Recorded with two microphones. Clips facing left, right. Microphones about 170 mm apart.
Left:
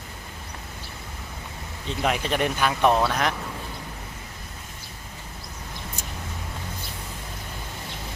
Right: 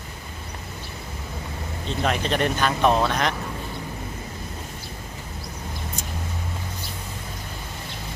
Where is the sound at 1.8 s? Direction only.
15° left (ahead or behind).